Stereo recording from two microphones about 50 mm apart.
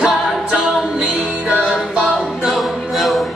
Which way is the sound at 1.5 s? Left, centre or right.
Centre.